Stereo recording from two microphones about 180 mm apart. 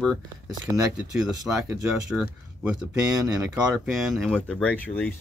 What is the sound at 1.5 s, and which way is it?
Speech, 10° right (ahead or behind).